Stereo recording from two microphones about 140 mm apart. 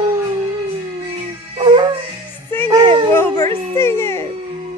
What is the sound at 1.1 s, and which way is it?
Music, 35° right (ahead or behind).